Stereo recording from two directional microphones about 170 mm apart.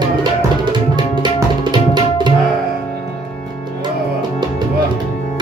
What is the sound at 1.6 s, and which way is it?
Tabla, 25° right (ahead or behind).